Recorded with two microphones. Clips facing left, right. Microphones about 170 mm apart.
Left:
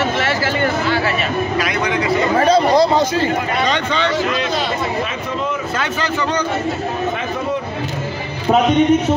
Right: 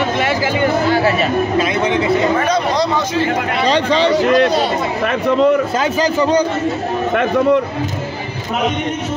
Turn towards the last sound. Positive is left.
turn(degrees=-65)  # may be behind; listen again after turning